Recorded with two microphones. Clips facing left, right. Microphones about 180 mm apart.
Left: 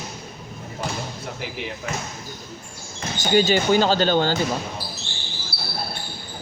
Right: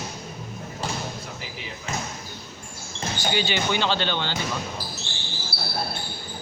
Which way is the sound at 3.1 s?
45° left (ahead or behind).